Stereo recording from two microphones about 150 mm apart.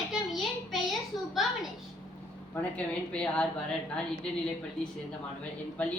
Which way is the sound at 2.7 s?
5° left (ahead or behind).